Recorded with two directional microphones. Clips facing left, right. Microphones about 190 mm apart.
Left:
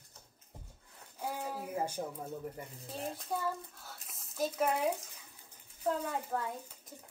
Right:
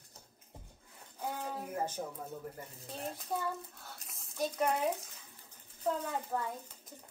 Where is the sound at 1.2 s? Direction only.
5° left (ahead or behind).